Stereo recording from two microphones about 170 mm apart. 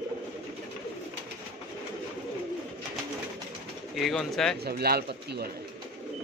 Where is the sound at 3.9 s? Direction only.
Centre (ahead or behind).